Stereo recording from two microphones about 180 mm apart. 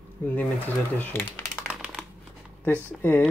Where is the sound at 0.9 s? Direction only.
10° left (ahead or behind).